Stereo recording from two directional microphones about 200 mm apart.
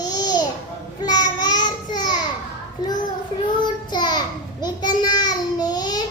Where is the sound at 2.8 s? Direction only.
20° left (ahead or behind).